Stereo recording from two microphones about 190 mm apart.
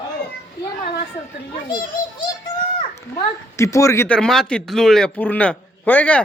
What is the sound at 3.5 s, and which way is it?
A man's voice, 15° left (ahead or behind).